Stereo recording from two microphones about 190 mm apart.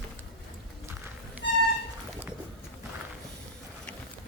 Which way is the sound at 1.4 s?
70° left (ahead or behind).